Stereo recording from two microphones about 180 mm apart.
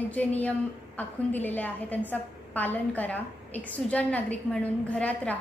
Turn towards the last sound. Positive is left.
turn(degrees=5)  # may be behind; listen again after turning